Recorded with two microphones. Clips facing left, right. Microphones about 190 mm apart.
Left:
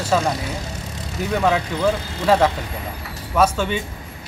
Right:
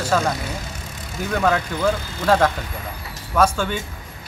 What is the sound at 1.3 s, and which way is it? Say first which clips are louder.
Speech: left 1 dB; 5° left (ahead or behind).